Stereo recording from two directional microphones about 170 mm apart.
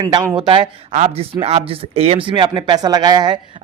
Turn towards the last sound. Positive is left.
turn(degrees=-25)  # may be behind; listen again after turning